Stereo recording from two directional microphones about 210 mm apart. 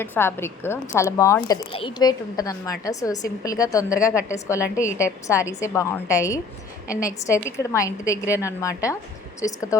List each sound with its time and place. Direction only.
0.0 s a woman's voice: 10° left (ahead or behind)